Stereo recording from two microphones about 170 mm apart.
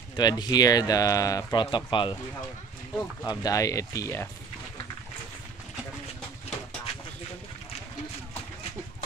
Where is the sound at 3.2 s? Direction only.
25° left (ahead or behind).